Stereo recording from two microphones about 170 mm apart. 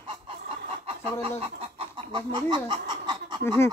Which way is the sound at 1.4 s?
30° right (ahead or behind).